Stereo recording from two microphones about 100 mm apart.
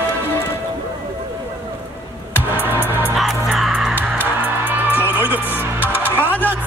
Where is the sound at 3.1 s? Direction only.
Centre (ahead or behind).